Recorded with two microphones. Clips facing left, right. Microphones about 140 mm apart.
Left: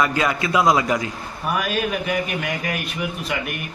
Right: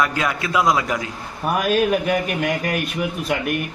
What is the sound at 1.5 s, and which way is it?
A man's voice, 45° right (ahead or behind).